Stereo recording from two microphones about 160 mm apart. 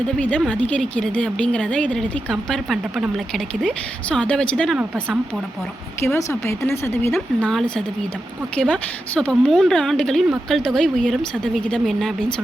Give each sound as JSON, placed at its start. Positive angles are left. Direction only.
{"t": 0.2, "sound": "speech", "side_deg": 10}
{"t": 6.0, "sound": "speech", "side_deg": 15}